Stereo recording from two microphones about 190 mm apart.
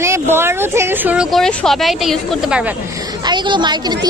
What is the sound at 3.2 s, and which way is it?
Speech, 25° right (ahead or behind).